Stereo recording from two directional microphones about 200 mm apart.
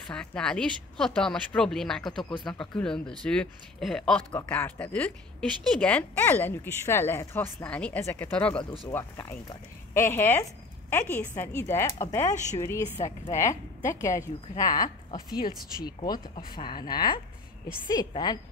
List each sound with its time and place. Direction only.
0.1 s a woman's voice: 5° left (ahead or behind)
12.9 s a woman's voice: 35° left (ahead or behind)
13.3 s speech: 15° left (ahead or behind)